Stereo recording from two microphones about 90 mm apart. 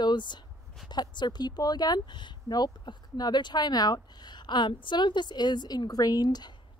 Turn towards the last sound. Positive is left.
turn(degrees=50)  # may be behind; listen again after turning